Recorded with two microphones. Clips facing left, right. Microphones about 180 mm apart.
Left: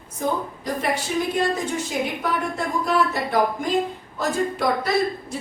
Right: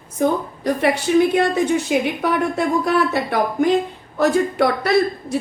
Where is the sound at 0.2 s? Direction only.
65° right (ahead or behind).